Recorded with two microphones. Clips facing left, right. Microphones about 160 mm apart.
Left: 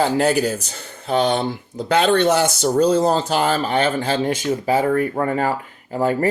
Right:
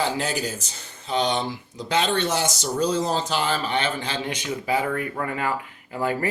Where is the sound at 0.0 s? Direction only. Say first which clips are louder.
Left 8 dB; 55° left (ahead or behind).